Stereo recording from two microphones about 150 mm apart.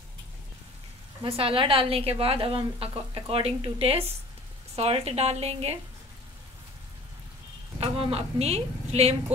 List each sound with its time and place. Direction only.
1.2 s a woman's voice: 35° right (ahead or behind)
7.8 s a woman's voice: 40° right (ahead or behind)